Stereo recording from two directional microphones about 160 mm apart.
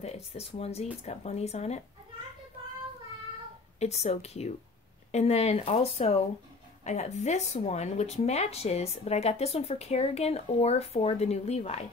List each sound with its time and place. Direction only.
0.0 s speech: 40° left (ahead or behind)
3.8 s speech: 40° left (ahead or behind)